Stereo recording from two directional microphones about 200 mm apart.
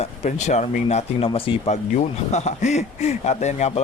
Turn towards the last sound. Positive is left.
turn(degrees=35)  # may be behind; listen again after turning